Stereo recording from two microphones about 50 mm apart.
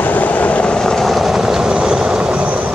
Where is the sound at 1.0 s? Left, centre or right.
Centre; by 2.7 s right.